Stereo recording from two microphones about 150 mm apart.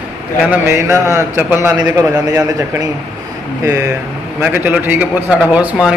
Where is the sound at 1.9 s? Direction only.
20° right (ahead or behind).